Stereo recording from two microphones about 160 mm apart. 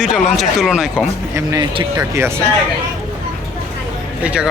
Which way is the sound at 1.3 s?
20° right (ahead or behind).